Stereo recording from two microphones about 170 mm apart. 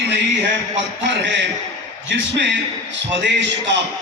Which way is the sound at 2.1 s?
90° right.